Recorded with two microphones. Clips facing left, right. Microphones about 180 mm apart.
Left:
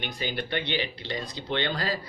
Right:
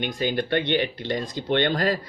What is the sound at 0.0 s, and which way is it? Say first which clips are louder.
Speech: right 7 dB; 50° right (ahead or behind).